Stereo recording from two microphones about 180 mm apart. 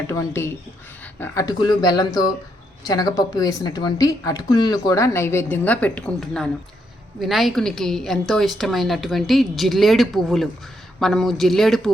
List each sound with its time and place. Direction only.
0.1 s a woman's voice: 15° left (ahead or behind)